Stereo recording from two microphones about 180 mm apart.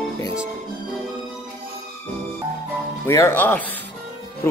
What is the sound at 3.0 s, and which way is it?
Speech, 15° left (ahead or behind).